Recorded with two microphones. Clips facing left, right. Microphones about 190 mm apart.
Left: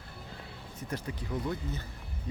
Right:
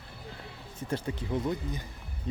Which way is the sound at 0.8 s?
30° right (ahead or behind).